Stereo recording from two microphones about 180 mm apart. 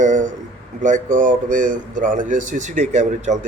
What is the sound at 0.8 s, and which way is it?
Speech, 45° right (ahead or behind).